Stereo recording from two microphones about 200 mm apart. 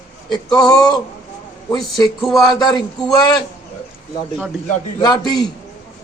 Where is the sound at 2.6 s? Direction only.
20° left (ahead or behind).